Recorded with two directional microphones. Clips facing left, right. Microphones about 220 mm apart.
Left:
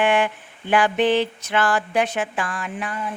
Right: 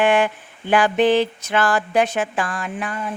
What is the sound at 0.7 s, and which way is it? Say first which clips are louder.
A woman's voice: right 2 dB; 40° right (ahead or behind).